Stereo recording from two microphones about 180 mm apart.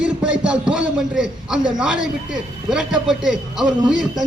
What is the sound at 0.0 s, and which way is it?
A man's voice, 5° right (ahead or behind).